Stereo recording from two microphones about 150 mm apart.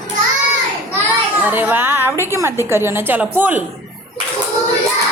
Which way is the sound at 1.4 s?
10° right (ahead or behind).